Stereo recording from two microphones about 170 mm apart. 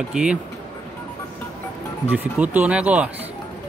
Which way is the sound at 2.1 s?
10° right (ahead or behind).